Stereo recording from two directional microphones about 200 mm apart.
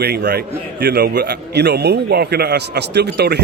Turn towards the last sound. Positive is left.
turn(degrees=-55)  # may be behind; listen again after turning